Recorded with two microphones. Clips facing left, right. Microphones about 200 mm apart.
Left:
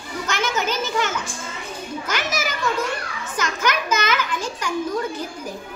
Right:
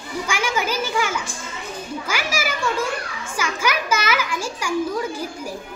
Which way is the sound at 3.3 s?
10° right (ahead or behind).